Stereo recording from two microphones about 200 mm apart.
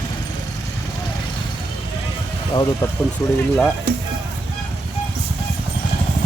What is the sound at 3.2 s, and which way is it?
Speech, 15° left (ahead or behind).